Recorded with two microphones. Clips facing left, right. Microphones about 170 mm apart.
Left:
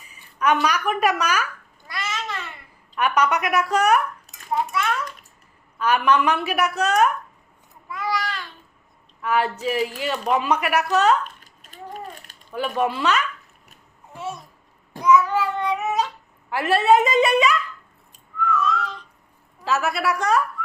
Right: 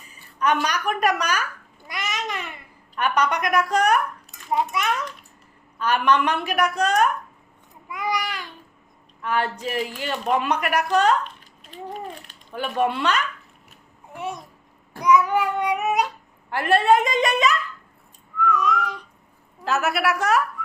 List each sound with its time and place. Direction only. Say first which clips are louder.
0.3 s a woman's voice: left 2 dB; 10° left (ahead or behind)
1.9 s babbling: right 1 dB; 15° right (ahead or behind)
3.0 s a woman's voice: left 1 dB; 10° left (ahead or behind)
4.5 s a child's voice: even; 20° right (ahead or behind)
5.8 s a woman's voice: left 1 dB; 10° left (ahead or behind)
7.9 s babbling: even; 15° right (ahead or behind)
9.2 s a woman's voice: left 3 dB; 5° left (ahead or behind)
11.2 s a sound: even; 45° left (ahead or behind)
12.5 s a woman's voice: even; centre (ahead or behind)
14.1 s babbling: right 1 dB; 15° right (ahead or behind)
15.0 s child singing: left 1 dB; 15° right (ahead or behind)
16.5 s a woman's voice: left 1 dB; 5° left (ahead or behind)
18.5 s a sound: left 2 dB; 15° right (ahead or behind)
20.0 s a woman's voice: even; 5° right (ahead or behind)